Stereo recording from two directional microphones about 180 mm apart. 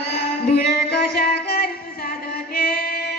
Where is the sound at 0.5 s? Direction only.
60° left (ahead or behind).